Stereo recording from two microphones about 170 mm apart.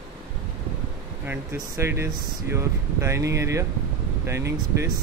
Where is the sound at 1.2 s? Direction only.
10° right (ahead or behind).